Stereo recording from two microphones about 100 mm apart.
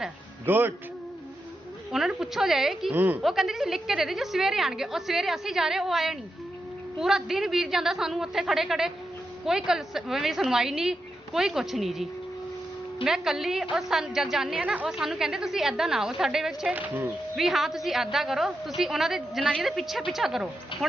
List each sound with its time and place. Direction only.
0.4 s a woman's voice: 20° right (ahead or behind)
1.9 s a woman's voice: 5° right (ahead or behind)
2.9 s a woman's voice: 20° right (ahead or behind)
3.2 s a woman's voice: 5° right (ahead or behind)
13.1 s a woman's voice: 5° right (ahead or behind)